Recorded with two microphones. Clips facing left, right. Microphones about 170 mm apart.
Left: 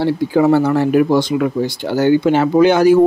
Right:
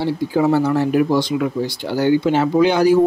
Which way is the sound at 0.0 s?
65° left (ahead or behind).